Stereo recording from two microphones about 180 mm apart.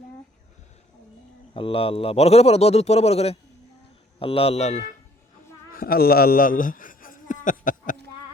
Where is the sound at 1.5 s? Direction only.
30° left (ahead or behind).